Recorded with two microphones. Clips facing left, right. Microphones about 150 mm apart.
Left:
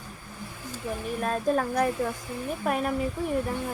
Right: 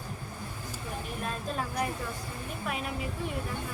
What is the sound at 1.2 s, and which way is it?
A woman's voice, 45° left (ahead or behind).